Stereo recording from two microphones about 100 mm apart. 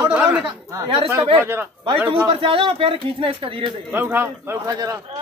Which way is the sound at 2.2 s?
65° right (ahead or behind).